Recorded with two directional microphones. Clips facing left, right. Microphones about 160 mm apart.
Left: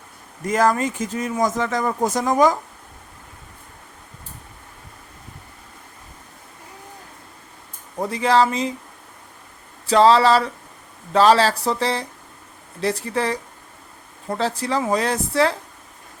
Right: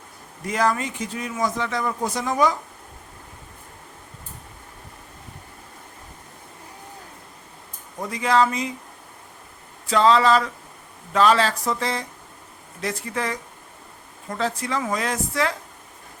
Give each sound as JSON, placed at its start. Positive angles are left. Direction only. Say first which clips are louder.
{"t": 0.4, "sound": "speech", "louder": "left 4 dB", "side_deg": 45}
{"t": 8.0, "sound": "speech", "louder": "left 2 dB", "side_deg": 30}
{"t": 9.9, "sound": "speech", "louder": "left 3 dB", "side_deg": 35}